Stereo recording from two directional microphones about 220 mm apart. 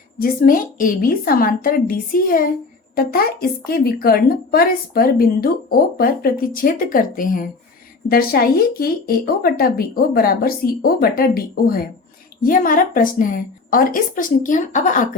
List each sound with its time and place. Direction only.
0.2 s a woman's voice: 40° left (ahead or behind)